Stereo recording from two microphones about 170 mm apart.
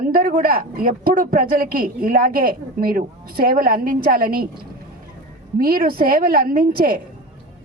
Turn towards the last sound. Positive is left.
turn(degrees=-60)  # may be behind; listen again after turning